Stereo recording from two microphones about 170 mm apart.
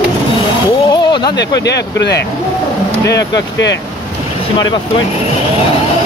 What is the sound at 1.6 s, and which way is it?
Speech, 80° left.